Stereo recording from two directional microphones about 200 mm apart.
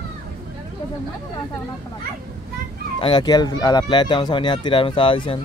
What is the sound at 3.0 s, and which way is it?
Speech, 25° left (ahead or behind).